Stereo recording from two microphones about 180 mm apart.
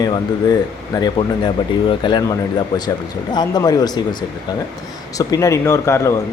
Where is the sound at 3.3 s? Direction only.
20° left (ahead or behind).